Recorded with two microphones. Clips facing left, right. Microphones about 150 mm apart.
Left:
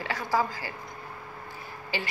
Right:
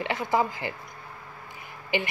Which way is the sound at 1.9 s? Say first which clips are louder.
Right 6 dB; 20° right (ahead or behind).